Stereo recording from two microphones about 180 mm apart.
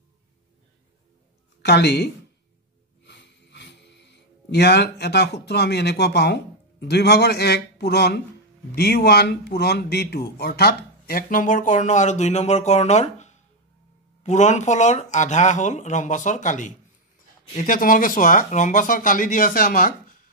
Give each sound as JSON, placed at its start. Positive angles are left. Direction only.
{"t": 1.6, "sound": "speech", "side_deg": 70}
{"t": 3.1, "sound": "a man's voice", "side_deg": 75}